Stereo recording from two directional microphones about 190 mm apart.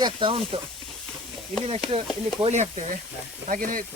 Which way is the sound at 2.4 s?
35° right (ahead or behind).